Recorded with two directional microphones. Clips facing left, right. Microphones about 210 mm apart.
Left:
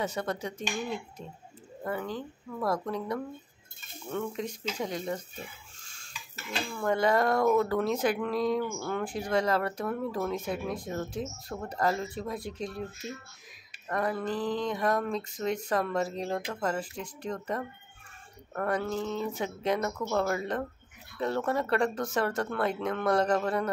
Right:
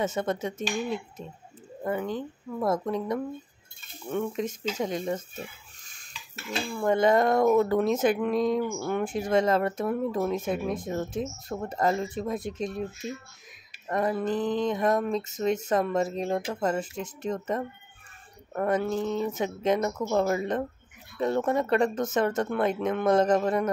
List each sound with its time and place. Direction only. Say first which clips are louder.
0.0 s speech: right 4 dB; 20° right (ahead or behind)
5.9 s stir: left 1 dB; 20° right (ahead or behind)
6.7 s speech: right 4 dB; 20° right (ahead or behind)
13.8 s speech: right 4 dB; 20° right (ahead or behind)